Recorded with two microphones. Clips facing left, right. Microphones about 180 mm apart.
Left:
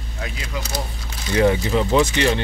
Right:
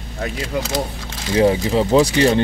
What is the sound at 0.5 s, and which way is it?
Speech, 60° right (ahead or behind).